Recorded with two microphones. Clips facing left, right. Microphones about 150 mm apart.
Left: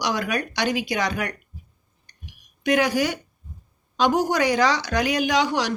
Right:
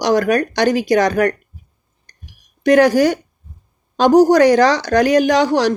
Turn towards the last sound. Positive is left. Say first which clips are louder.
# right 8 dB
turn(degrees=-45)  # may be behind; listen again after turning